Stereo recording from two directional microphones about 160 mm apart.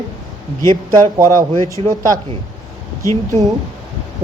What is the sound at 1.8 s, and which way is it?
Speech, 35° right (ahead or behind).